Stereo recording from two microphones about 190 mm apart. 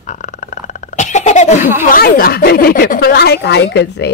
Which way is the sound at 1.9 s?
50° left (ahead or behind).